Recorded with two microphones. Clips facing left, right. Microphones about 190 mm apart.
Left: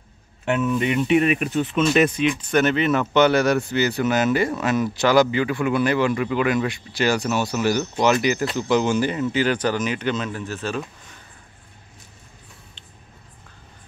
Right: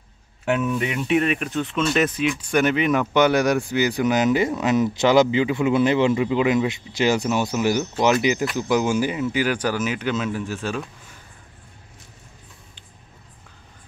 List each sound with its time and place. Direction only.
0.5 s speech: 10° right (ahead or behind)